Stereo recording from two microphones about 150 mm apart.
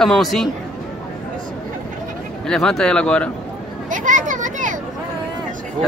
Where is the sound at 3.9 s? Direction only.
60° right (ahead or behind).